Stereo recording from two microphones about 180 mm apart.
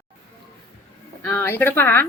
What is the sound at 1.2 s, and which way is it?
Speech, 15° left (ahead or behind).